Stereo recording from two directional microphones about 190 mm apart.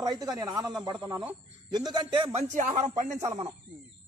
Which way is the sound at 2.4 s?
40° right (ahead or behind).